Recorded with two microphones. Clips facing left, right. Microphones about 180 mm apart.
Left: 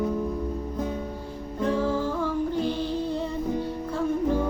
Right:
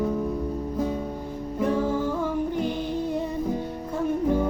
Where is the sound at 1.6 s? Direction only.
15° right (ahead or behind).